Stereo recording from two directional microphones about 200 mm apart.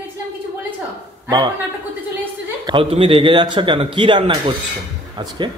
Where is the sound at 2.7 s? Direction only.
25° right (ahead or behind).